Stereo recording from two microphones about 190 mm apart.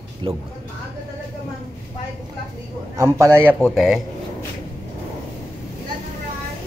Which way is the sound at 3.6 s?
Centre (ahead or behind).